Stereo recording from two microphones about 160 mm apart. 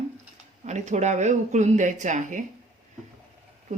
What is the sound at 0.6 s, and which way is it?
Speech, 45° right (ahead or behind).